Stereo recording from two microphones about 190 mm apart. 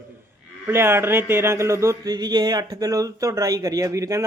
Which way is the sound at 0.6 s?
10° right (ahead or behind).